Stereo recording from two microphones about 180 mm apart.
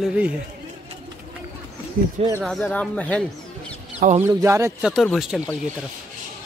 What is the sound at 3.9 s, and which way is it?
Speech, 45° right (ahead or behind).